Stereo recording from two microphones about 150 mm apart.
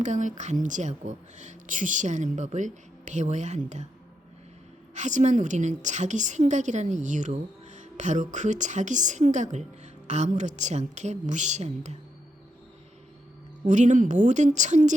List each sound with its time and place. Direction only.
0.0 s a woman's voice: 55° right (ahead or behind)
4.9 s a woman's voice: 50° right (ahead or behind)
13.7 s a woman's voice: 55° right (ahead or behind)